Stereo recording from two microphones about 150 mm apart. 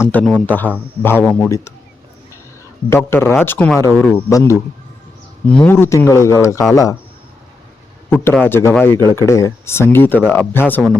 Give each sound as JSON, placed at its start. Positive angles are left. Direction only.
{"t": 0.0, "sound": "speech", "side_deg": 10}
{"t": 2.9, "sound": "speech", "side_deg": 15}
{"t": 5.6, "sound": "speech", "side_deg": 15}
{"t": 8.1, "sound": "speech", "side_deg": 15}